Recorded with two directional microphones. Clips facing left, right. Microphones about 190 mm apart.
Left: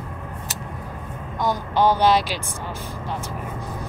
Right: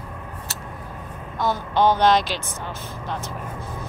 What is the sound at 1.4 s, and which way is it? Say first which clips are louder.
Speech: even; 15° left (ahead or behind).